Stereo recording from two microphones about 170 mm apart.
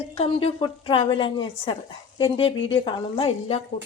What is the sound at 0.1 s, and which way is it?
A woman's voice, 35° left (ahead or behind).